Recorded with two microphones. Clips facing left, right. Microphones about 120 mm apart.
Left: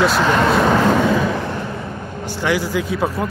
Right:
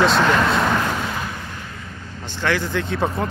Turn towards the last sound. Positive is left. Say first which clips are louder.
# left 2 dB
turn(degrees=5)  # may be behind; listen again after turning